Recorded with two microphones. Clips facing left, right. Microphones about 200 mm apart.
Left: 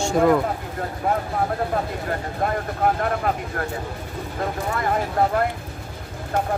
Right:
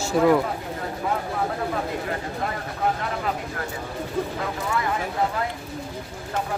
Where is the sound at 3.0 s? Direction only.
50° left (ahead or behind).